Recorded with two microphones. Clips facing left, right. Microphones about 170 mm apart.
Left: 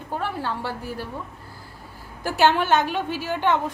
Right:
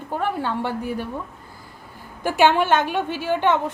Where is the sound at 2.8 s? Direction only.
10° left (ahead or behind).